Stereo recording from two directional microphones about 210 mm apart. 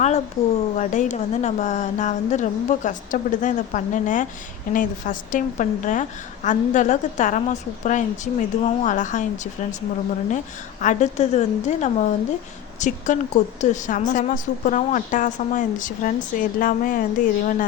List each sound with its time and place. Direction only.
0.0 s a woman's voice: 30° left (ahead or behind)